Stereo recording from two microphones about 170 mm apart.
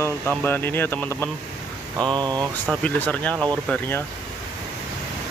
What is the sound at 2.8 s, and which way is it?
Speech, 10° left (ahead or behind).